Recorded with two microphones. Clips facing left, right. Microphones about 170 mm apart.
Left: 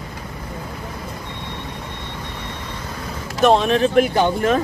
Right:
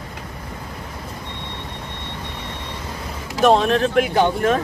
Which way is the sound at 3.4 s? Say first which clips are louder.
Even; centre (ahead or behind).